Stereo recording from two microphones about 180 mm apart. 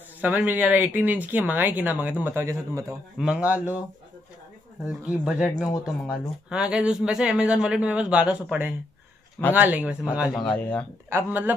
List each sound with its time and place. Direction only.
0.2 s speech: 10° right (ahead or behind)
3.2 s speech: 5° right (ahead or behind)
4.8 s speech: 5° right (ahead or behind)
10.3 s speech: 5° left (ahead or behind)
11.1 s speech: 10° right (ahead or behind)